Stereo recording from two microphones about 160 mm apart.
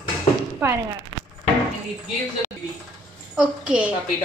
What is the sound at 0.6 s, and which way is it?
Speech, 15° right (ahead or behind).